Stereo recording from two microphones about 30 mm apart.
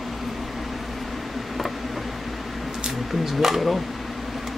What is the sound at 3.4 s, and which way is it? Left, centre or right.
Speech, centre.